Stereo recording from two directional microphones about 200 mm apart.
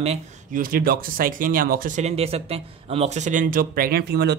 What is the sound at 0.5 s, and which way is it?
Speech, 45° right (ahead or behind).